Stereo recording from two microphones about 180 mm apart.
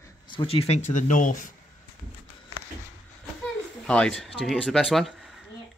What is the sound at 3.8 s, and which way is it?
Speech, 5° left (ahead or behind).